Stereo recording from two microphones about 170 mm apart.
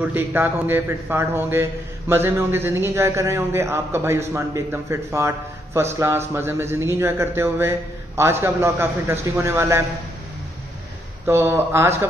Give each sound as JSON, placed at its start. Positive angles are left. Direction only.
{"t": 0.0, "sound": "a man's voice", "side_deg": -10}
{"t": 11.2, "sound": "a man's voice", "side_deg": -15}